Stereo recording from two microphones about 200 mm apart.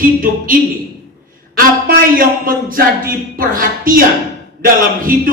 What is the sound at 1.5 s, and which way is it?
Speech, 45° right (ahead or behind).